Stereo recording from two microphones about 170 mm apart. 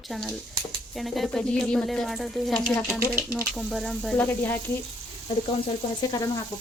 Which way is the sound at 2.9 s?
10° right (ahead or behind).